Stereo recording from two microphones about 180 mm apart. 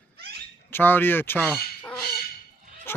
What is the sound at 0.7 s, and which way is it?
Speech, 10° left (ahead or behind).